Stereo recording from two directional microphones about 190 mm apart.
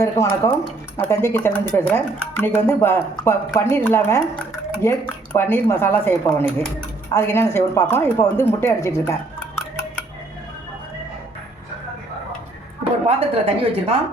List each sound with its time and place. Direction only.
0.0 s speech: 15° left (ahead or behind)
13.1 s a woman's voice: 30° right (ahead or behind)